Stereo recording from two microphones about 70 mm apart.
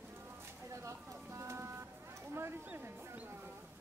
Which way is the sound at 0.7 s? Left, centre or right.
Right.